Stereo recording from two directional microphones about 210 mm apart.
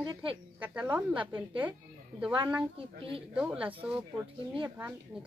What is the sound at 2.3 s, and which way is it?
Speech, 20° right (ahead or behind).